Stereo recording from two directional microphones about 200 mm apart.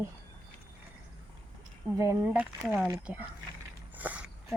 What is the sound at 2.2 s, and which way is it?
A woman's voice, 5° right (ahead or behind).